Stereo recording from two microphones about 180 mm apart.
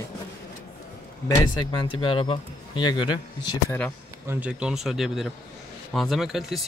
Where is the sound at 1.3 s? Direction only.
20° left (ahead or behind).